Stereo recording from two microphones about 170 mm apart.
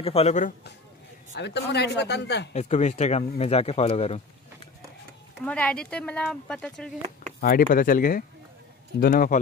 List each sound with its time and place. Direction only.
0.0 s speech: 35° left (ahead or behind)
1.3 s speech: 90° left
2.5 s speech: 45° left (ahead or behind)
5.4 s speech: 5° left (ahead or behind)
7.3 s speech: 55° left (ahead or behind)